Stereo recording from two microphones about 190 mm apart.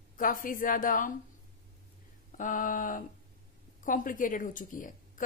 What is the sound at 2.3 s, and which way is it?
A woman's voice, 45° left (ahead or behind).